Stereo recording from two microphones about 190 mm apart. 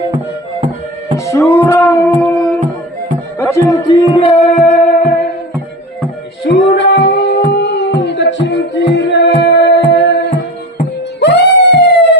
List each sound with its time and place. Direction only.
1.1 s music: 15° left (ahead or behind)
4.1 s music: 30° left (ahead or behind)
6.4 s female singing: 70° left (ahead or behind)
11.2 s music: 65° left (ahead or behind)